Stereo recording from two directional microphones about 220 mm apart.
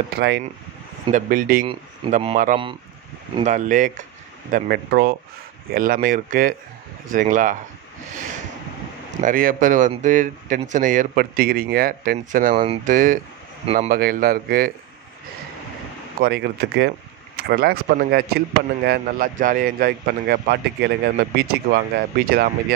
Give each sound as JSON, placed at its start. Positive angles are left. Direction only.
{"t": 0.2, "sound": "a man's voice", "side_deg": -45}
{"t": 9.2, "sound": "speech", "side_deg": -40}
{"t": 12.5, "sound": "speech", "side_deg": -25}
{"t": 12.9, "sound": "speech", "side_deg": -35}
{"t": 16.2, "sound": "a man's voice", "side_deg": -45}